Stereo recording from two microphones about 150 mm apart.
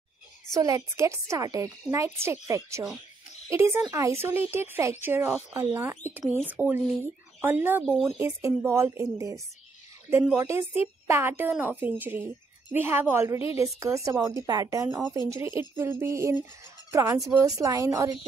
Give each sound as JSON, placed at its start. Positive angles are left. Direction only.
{"t": 0.6, "sound": "a woman's voice", "side_deg": -20}